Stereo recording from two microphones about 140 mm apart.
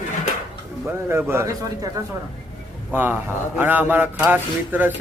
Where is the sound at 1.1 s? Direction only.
20° right (ahead or behind).